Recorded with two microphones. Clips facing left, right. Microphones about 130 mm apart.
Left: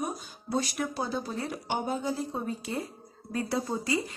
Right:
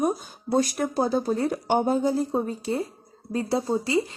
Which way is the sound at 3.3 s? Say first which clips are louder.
Right 6 dB; 25° right (ahead or behind).